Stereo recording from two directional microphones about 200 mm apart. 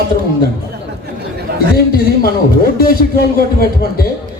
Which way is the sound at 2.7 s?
45° left (ahead or behind).